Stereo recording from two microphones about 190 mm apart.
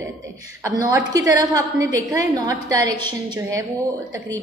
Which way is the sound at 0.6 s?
15° right (ahead or behind).